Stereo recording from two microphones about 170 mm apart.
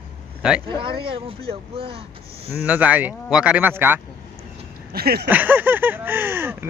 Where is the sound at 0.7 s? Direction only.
30° right (ahead or behind).